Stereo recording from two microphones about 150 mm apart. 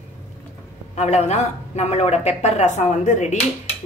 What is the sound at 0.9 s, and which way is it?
A woman's voice, 45° left (ahead or behind).